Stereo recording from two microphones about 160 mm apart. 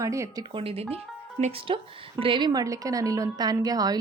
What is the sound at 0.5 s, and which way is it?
Speech, 35° right (ahead or behind).